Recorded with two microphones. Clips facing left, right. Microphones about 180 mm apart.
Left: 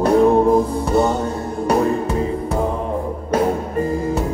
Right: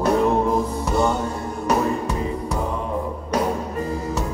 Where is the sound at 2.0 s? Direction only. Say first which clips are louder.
Left 4 dB; 55° left (ahead or behind).